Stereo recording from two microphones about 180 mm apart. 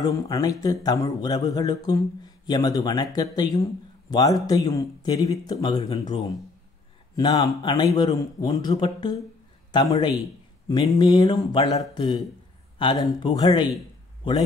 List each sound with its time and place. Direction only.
0.0 s speech: 20° left (ahead or behind)
5.8 s speech: 35° left (ahead or behind)
7.2 s a man's voice: 20° left (ahead or behind)